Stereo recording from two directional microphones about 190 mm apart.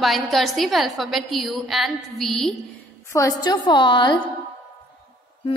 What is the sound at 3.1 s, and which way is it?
A woman's voice, 20° left (ahead or behind).